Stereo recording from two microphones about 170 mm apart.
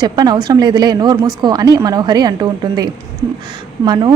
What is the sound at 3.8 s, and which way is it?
Speech, 25° right (ahead or behind).